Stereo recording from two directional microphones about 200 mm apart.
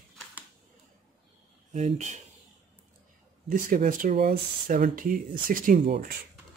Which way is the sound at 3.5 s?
45° right (ahead or behind).